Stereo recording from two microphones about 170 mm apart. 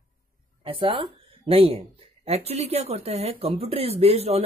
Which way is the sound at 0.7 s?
30° right (ahead or behind).